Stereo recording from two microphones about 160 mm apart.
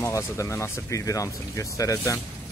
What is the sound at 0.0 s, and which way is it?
Speech, 20° left (ahead or behind).